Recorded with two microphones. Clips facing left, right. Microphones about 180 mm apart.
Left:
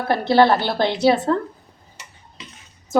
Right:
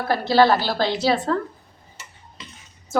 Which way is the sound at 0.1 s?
25° left (ahead or behind).